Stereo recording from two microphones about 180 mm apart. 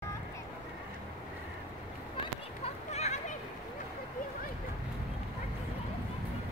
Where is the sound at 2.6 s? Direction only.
35° left (ahead or behind).